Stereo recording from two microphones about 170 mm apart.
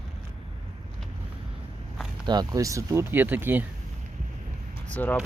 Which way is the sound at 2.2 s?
25° right (ahead or behind).